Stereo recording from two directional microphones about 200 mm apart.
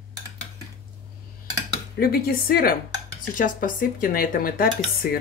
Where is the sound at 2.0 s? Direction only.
50° left (ahead or behind).